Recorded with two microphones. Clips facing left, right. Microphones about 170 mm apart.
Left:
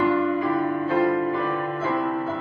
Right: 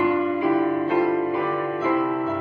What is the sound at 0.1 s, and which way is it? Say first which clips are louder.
Music: right 1 dB; 15° right (ahead or behind).